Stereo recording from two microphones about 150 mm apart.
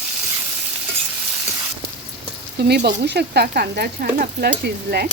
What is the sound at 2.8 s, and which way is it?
Speech, 90° right.